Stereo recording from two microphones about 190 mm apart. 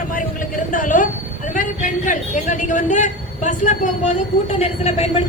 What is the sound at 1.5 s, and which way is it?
A woman's voice, 45° left (ahead or behind).